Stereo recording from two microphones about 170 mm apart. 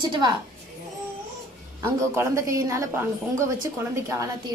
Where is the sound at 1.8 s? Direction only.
15° right (ahead or behind).